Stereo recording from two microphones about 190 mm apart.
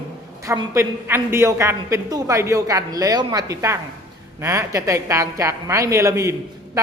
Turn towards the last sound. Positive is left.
turn(degrees=-15)  # may be behind; listen again after turning